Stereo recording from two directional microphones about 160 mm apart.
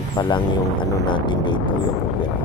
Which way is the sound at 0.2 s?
30° left (ahead or behind).